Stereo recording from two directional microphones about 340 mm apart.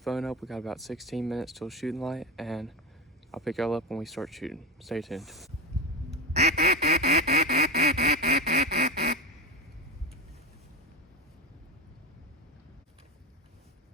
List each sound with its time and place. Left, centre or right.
0.0 s speech: centre
6.3 s quack: right